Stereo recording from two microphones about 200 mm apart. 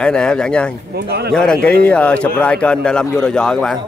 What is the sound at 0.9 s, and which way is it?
Speech, 55° right (ahead or behind).